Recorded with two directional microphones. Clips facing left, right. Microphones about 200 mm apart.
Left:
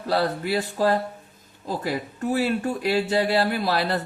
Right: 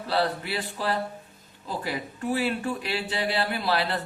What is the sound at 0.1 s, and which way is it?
Speech, 40° left (ahead or behind).